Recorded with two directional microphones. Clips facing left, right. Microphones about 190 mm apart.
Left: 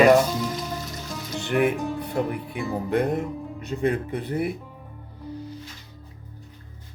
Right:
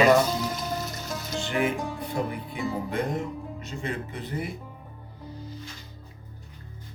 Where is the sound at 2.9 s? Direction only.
60° left (ahead or behind).